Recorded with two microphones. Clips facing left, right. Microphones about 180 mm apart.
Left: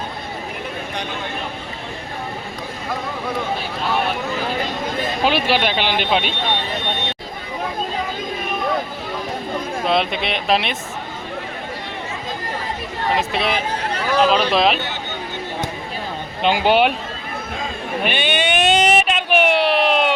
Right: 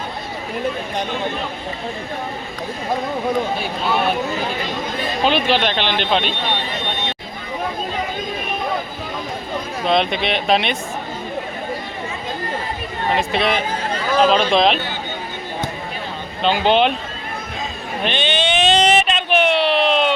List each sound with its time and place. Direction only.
5.2 s speech: 10° left (ahead or behind)
9.8 s speech: 5° left (ahead or behind)
13.1 s speech: centre (ahead or behind)
16.4 s speech: 10° left (ahead or behind)
18.0 s a sound: 10° left (ahead or behind)